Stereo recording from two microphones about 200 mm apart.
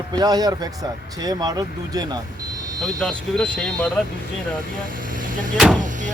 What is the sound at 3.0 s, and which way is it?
Speech, 5° left (ahead or behind).